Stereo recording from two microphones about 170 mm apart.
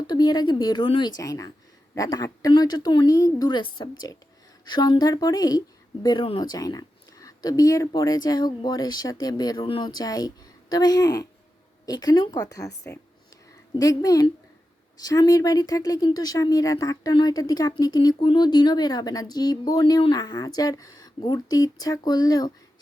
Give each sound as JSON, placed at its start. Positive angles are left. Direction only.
{"t": 0.1, "sound": "speech", "side_deg": 25}